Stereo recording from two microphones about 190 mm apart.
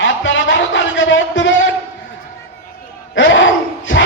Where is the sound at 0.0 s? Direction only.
80° left.